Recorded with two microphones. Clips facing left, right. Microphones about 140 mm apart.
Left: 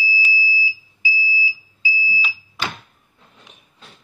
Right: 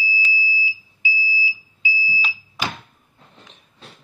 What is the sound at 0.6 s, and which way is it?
Smoke detector, 20° right (ahead or behind).